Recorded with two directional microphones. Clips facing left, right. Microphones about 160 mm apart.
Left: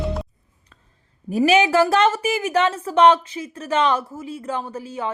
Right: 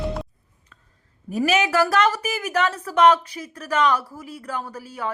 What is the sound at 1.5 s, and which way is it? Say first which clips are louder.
A woman's voice: left 4 dB; 30° left (ahead or behind).